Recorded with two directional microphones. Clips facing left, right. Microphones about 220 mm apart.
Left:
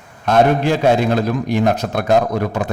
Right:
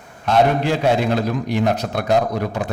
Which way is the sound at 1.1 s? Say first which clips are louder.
Left 3 dB; 50° left (ahead or behind).